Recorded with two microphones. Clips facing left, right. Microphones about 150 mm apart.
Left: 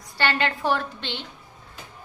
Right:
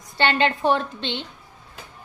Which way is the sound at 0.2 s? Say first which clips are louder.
Right 4 dB; 25° right (ahead or behind).